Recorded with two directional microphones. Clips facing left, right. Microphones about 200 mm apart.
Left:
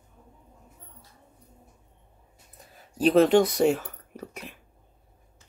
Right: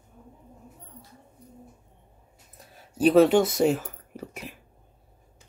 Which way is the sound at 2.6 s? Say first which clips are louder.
Right 2 dB; 5° right (ahead or behind).